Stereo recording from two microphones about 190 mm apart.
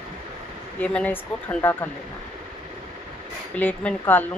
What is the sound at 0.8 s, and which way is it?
Speech, 5° left (ahead or behind).